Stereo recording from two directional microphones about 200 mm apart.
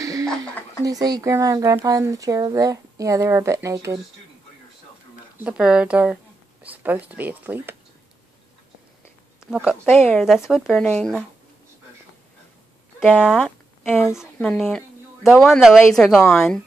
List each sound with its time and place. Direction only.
0.0 s a sound: 15° right (ahead or behind)
0.8 s speech: 20° right (ahead or behind)
5.4 s speech: 5° right (ahead or behind)
9.4 s speech: 5° right (ahead or behind)
9.8 s speech: 10° left (ahead or behind)
13.0 s speech: centre (ahead or behind)